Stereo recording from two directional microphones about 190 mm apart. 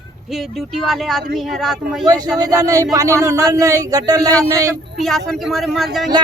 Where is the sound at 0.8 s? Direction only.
Centre (ahead or behind).